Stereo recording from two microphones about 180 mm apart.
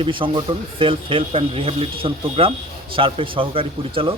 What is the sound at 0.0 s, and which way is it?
Speech, 30° right (ahead or behind).